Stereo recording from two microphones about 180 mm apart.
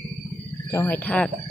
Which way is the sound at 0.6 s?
10° left (ahead or behind).